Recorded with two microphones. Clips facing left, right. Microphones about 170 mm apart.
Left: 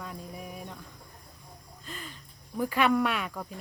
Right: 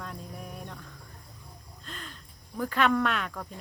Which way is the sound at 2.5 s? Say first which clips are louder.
Left 1 dB; 10° left (ahead or behind).